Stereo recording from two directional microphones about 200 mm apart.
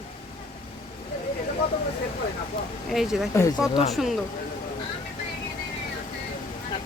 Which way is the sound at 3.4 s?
15° left (ahead or behind).